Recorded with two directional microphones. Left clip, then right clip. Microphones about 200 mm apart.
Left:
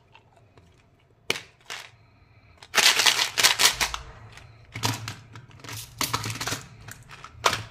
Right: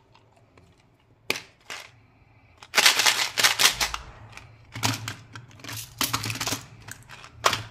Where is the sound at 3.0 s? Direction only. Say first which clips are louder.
Left 1 dB; 5° left (ahead or behind).